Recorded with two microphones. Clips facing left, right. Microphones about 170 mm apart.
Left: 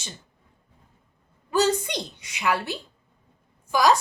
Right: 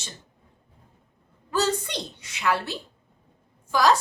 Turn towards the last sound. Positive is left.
turn(degrees=15)  # may be behind; listen again after turning